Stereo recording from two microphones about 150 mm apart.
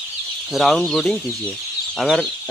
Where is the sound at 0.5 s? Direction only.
Centre (ahead or behind).